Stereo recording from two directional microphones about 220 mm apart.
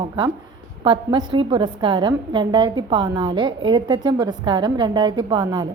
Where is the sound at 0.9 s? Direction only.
20° right (ahead or behind).